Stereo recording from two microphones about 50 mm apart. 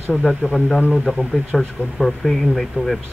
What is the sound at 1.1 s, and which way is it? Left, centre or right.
Speech, centre.